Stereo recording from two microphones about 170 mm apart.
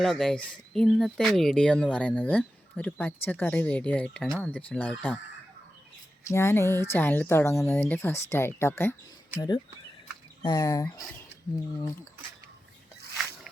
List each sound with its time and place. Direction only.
0.0 s speech: centre (ahead or behind)
6.2 s speech: 15° left (ahead or behind)